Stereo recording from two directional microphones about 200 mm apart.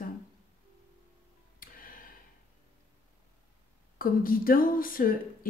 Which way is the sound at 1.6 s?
45° left (ahead or behind).